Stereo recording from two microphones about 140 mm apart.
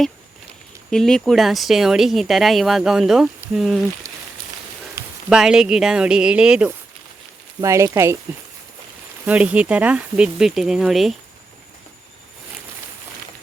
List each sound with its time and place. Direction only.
0.9 s speech: 5° left (ahead or behind)
5.0 s a sound: 25° right (ahead or behind)
5.3 s speech: 5° right (ahead or behind)
7.6 s speech: 20° right (ahead or behind)
9.2 s speech: 10° right (ahead or behind)